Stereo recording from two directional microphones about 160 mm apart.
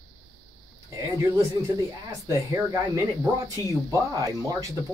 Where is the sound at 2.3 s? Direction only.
20° right (ahead or behind).